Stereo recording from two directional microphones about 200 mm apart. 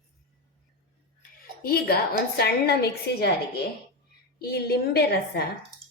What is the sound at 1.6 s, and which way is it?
A woman's voice, 50° left (ahead or behind).